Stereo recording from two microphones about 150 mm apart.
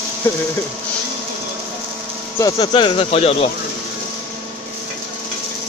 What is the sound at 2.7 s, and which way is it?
Speech, 35° left (ahead or behind).